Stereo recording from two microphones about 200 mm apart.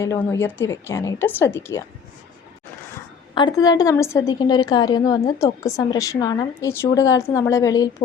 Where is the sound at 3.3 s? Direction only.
20° left (ahead or behind).